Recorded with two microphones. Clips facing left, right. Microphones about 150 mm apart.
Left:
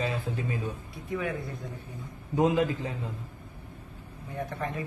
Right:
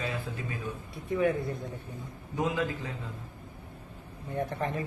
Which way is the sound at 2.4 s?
20° left (ahead or behind).